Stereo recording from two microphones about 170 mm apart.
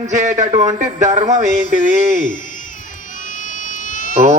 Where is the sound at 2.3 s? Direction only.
50° left (ahead or behind).